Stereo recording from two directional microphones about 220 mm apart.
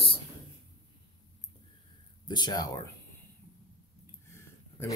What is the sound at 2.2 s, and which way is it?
Speech, 20° left (ahead or behind).